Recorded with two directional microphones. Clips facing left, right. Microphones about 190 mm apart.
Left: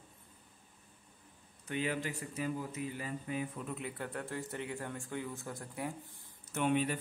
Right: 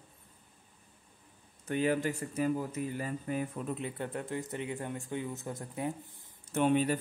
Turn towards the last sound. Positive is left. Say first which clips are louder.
# right 4 dB
turn(degrees=-35)  # may be behind; listen again after turning